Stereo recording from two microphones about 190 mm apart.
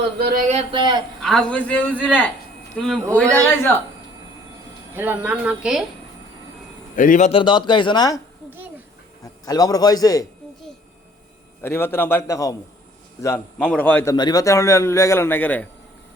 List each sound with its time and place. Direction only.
0.2 s speech: 55° right (ahead or behind)
0.4 s speech: 30° right (ahead or behind)
1.2 s a man's voice: centre (ahead or behind)
4.9 s speech: 10° right (ahead or behind)
6.9 s a man's voice: 45° left (ahead or behind); by 8.2 s 20° left (ahead or behind)
9.2 s a man's voice: 20° left (ahead or behind)
11.6 s a man's voice: 10° left (ahead or behind)